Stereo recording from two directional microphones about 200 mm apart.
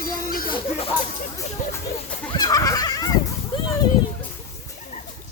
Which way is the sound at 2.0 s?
20° left (ahead or behind).